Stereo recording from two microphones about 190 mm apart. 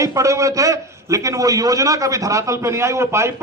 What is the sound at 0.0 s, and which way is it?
A man's voice, 15° right (ahead or behind).